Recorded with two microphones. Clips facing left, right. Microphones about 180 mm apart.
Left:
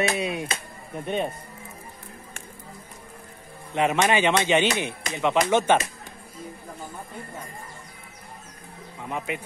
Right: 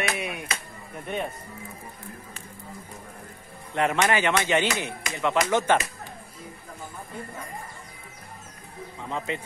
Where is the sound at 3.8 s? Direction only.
15° left (ahead or behind).